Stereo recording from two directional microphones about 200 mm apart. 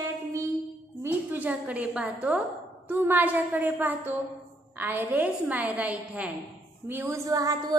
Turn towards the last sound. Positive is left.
turn(degrees=-15)  # may be behind; listen again after turning